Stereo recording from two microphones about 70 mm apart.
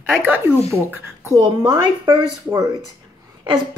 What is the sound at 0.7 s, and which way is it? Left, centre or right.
A woman's voice, right.